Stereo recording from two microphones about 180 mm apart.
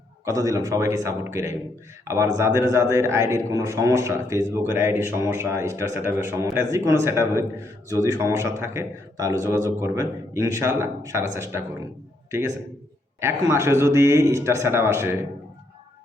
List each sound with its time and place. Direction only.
0.3 s a man's voice: 20° right (ahead or behind)
13.1 s a man's voice: 15° right (ahead or behind)